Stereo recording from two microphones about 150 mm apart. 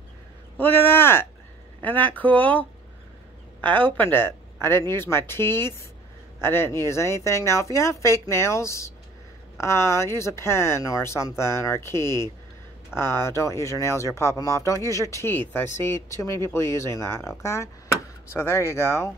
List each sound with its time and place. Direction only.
0.6 s a sound: 15° left (ahead or behind)
1.8 s speech: 10° left (ahead or behind)
3.6 s speech: 10° left (ahead or behind)